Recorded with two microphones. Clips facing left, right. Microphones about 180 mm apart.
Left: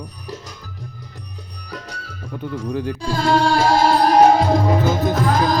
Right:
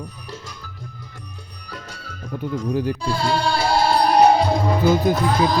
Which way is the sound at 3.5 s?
90° left.